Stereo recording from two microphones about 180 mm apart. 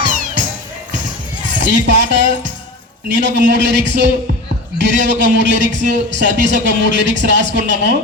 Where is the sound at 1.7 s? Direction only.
85° right.